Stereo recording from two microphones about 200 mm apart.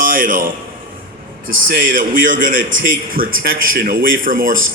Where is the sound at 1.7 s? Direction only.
45° right (ahead or behind).